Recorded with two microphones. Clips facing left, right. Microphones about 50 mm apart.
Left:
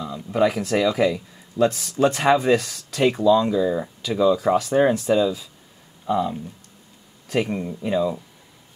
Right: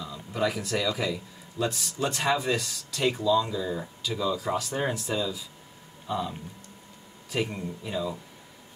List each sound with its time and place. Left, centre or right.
0.0 s a sound: left
0.7 s speech: left
4.4 s speech: left
6.0 s speech: left
7.4 s speech: left